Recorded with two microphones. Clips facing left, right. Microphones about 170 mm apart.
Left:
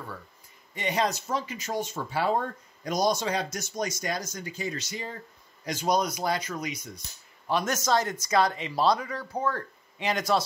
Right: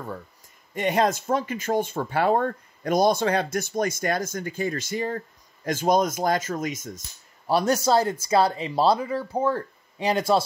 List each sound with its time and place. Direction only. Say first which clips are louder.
0.7 s speech: right 6 dB; 50° right (ahead or behind)
7.4 s speech: right 6 dB; 35° right (ahead or behind)